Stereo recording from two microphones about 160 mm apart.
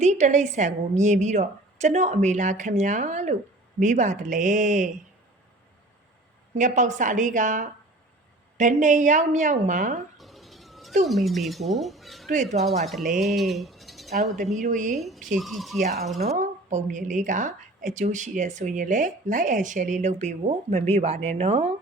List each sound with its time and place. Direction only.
0.0 s a woman's voice: 50° right (ahead or behind)
6.6 s a woman's voice: 50° right (ahead or behind)
10.2 s a sound: centre (ahead or behind)
11.0 s speech: centre (ahead or behind)
12.3 s a woman's voice: 50° right (ahead or behind)
13.1 s speech: centre (ahead or behind)
14.5 s a woman's voice: 50° right (ahead or behind)
14.9 s speech: centre (ahead or behind)
16.2 s a woman's voice: 45° right (ahead or behind)